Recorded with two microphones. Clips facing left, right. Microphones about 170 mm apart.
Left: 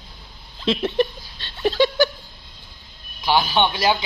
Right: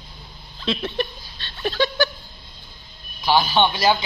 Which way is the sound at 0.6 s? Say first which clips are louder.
Left 5 dB; 25° left (ahead or behind).